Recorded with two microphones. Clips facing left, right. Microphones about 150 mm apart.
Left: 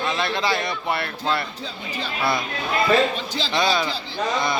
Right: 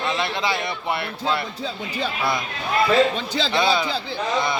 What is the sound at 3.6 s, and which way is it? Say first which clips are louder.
Speech: even; 20° right (ahead or behind).